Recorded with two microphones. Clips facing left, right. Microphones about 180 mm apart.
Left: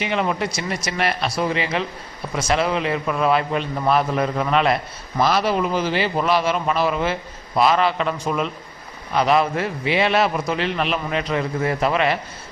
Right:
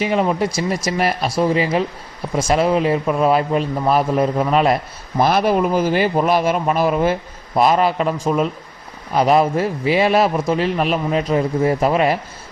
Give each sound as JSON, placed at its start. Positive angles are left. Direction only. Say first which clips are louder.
{"t": 0.0, "sound": "a man's voice", "louder": "right 5 dB", "side_deg": -35}
{"t": 5.2, "sound": "a man's voice", "louder": "right 4 dB", "side_deg": -50}